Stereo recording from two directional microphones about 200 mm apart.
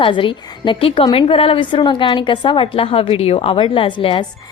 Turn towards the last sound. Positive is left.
turn(degrees=25)  # may be behind; listen again after turning